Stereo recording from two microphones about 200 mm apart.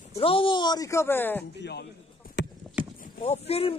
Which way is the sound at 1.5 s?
55° left (ahead or behind).